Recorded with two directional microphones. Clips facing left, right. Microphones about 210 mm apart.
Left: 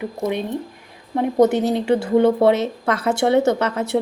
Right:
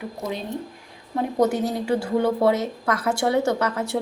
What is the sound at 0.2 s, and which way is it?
Speech, 60° left (ahead or behind).